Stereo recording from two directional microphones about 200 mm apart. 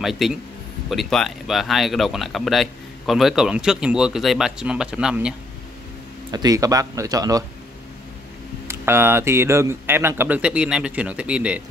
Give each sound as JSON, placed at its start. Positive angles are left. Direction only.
{"t": 0.0, "sound": "speech", "side_deg": 0}
{"t": 6.3, "sound": "speech", "side_deg": -20}
{"t": 8.6, "sound": "speech", "side_deg": -10}